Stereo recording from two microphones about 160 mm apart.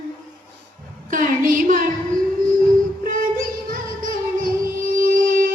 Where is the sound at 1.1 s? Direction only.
60° right (ahead or behind).